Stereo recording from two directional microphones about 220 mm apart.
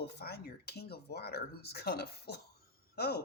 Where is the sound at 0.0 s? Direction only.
45° left (ahead or behind).